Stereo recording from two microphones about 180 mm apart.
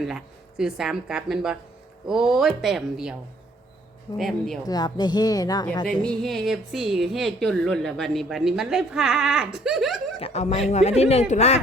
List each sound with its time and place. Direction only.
0.0 s a woman's voice: 5° right (ahead or behind)
4.2 s a woman's voice: centre (ahead or behind)
4.6 s a woman's voice: 20° left (ahead or behind)
6.0 s a woman's voice: 5° left (ahead or behind)
10.2 s speech: 35° left (ahead or behind)